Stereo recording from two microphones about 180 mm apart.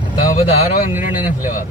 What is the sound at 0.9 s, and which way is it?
Speech, 10° right (ahead or behind).